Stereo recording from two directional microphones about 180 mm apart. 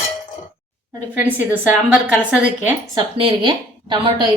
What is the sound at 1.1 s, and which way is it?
A woman's voice, 10° right (ahead or behind).